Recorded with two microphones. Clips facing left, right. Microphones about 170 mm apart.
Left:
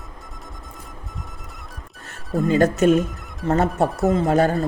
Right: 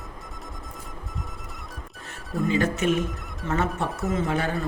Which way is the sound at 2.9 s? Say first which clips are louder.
Left 7 dB; centre (ahead or behind).